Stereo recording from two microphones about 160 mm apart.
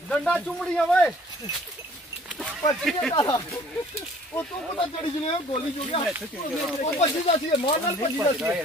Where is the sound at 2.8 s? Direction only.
5° left (ahead or behind).